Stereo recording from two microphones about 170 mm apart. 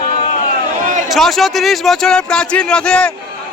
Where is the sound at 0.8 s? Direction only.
50° right (ahead or behind).